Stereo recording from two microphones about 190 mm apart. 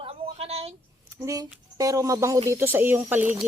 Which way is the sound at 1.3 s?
20° right (ahead or behind).